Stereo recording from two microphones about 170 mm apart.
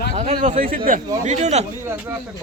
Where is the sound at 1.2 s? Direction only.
40° right (ahead or behind).